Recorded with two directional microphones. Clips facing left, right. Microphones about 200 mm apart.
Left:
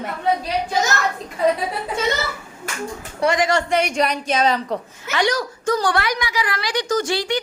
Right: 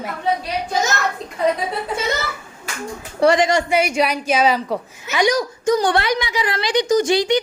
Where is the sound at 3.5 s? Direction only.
10° right (ahead or behind).